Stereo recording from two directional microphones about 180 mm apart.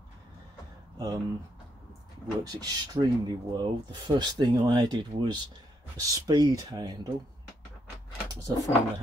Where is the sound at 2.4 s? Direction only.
20° right (ahead or behind).